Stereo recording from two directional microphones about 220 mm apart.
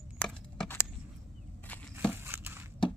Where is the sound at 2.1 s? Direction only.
10° right (ahead or behind).